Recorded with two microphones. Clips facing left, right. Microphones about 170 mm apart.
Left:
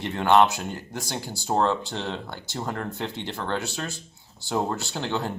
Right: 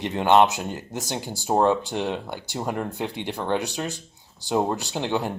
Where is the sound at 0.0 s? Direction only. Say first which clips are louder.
Right 1 dB; 15° right (ahead or behind).